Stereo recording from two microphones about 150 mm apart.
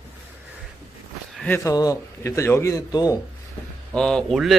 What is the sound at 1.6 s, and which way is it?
Speech, 25° left (ahead or behind).